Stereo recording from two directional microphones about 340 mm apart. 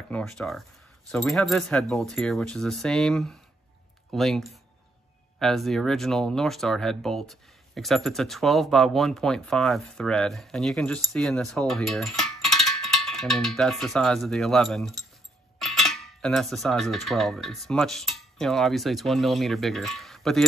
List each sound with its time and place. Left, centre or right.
0.1 s speech: centre
15.6 s cutlery: centre